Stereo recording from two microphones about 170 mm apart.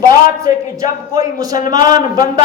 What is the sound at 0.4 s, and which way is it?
A man's voice, 20° right (ahead or behind).